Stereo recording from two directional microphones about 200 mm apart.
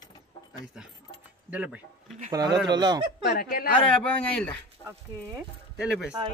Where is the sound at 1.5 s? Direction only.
5° right (ahead or behind).